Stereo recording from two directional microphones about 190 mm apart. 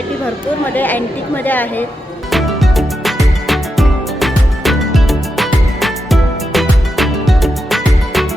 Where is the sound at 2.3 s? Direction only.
Centre (ahead or behind).